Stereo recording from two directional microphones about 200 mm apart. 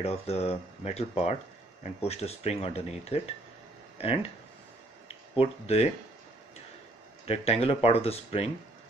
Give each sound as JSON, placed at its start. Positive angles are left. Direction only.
{"t": 0.0, "sound": "speech", "side_deg": 30}
{"t": 5.0, "sound": "a sound", "side_deg": 30}
{"t": 7.2, "sound": "speech", "side_deg": 30}